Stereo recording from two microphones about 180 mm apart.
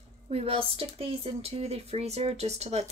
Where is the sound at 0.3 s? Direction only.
35° right (ahead or behind).